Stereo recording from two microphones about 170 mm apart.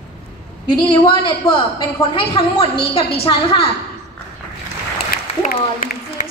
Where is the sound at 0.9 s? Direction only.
30° left (ahead or behind).